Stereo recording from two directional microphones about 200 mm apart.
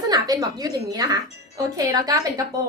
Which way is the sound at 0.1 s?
20° right (ahead or behind).